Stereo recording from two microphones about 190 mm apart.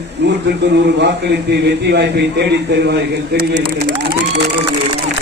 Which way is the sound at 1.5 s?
60° right (ahead or behind).